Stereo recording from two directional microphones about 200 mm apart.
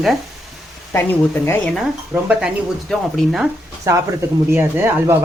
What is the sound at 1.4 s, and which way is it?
Speech, 5° left (ahead or behind).